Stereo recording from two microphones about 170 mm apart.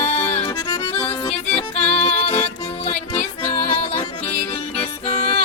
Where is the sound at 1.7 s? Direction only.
40° left (ahead or behind).